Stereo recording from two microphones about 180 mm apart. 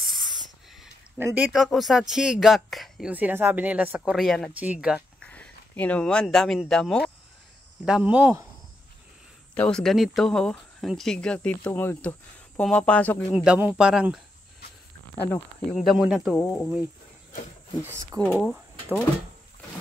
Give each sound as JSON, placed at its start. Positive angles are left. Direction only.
{"t": 0.0, "sound": "spray", "side_deg": 0}
{"t": 1.2, "sound": "speech", "side_deg": -10}
{"t": 5.2, "sound": "speech", "side_deg": 5}
{"t": 7.8, "sound": "speech", "side_deg": -5}
{"t": 9.6, "sound": "speech", "side_deg": 5}
{"t": 13.3, "sound": "speech", "side_deg": -5}
{"t": 15.1, "sound": "speech", "side_deg": 10}
{"t": 15.7, "sound": "speech", "side_deg": 0}
{"t": 17.8, "sound": "speech", "side_deg": -15}
{"t": 18.2, "sound": "speech", "side_deg": 0}